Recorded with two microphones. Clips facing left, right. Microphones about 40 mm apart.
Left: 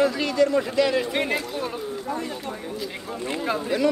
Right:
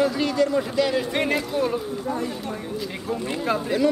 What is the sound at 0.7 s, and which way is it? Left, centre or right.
Speech, left.